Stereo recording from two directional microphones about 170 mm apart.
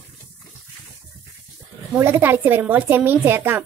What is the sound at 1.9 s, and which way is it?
A woman's voice, 15° right (ahead or behind).